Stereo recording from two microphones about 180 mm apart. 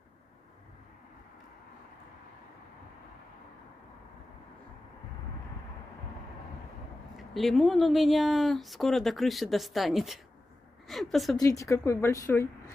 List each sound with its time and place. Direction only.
7.2 s speech: centre (ahead or behind)
11.3 s speech: 20° left (ahead or behind)